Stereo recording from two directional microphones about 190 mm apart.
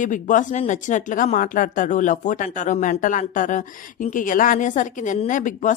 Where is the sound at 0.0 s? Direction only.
40° left (ahead or behind).